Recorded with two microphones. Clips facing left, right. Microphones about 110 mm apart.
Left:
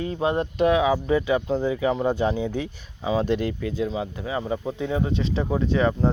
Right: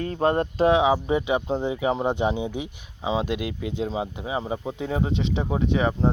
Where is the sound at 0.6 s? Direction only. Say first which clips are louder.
Right 1 dB; 25° right (ahead or behind); by 3.7 s 10° right (ahead or behind).